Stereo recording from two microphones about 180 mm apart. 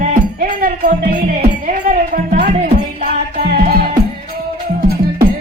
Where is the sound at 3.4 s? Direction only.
60° right (ahead or behind).